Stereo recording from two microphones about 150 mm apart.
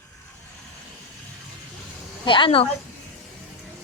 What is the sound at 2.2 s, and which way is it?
Speech, 35° left (ahead or behind).